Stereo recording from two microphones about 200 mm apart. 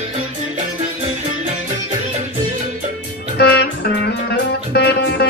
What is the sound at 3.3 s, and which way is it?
Music, 55° left (ahead or behind).